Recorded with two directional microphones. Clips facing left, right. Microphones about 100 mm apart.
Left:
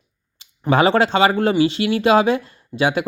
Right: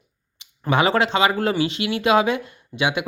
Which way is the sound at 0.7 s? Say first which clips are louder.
Left 3 dB; 30° left (ahead or behind).